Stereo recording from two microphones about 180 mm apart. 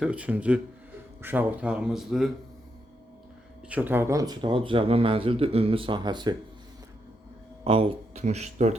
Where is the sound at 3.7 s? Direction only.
10° right (ahead or behind).